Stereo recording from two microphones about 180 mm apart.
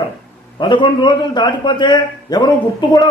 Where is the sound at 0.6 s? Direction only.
25° left (ahead or behind).